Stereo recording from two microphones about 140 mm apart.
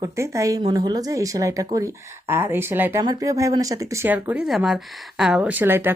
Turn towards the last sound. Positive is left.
turn(degrees=-15)  # may be behind; listen again after turning